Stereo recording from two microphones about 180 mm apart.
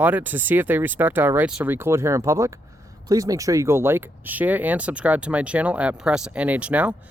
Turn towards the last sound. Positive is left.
turn(degrees=-10)  # may be behind; listen again after turning